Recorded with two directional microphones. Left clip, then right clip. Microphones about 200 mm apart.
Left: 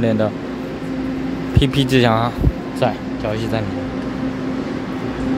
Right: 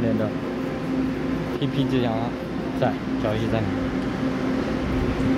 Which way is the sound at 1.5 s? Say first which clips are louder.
Left 10 dB; 30° left (ahead or behind).